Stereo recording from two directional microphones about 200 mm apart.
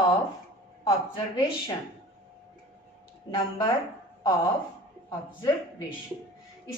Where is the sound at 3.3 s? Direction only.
20° left (ahead or behind).